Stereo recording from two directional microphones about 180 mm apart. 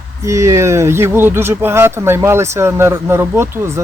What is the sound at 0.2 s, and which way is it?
Speech, 15° right (ahead or behind).